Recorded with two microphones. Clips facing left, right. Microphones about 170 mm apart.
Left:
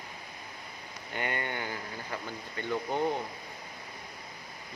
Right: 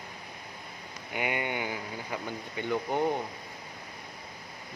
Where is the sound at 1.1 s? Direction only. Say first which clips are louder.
Right 3 dB; 10° right (ahead or behind).